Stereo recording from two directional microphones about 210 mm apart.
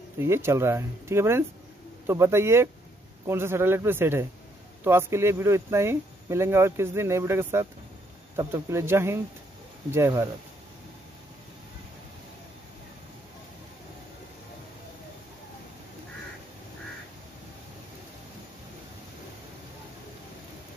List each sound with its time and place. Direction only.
0.2 s speech: 10° right (ahead or behind)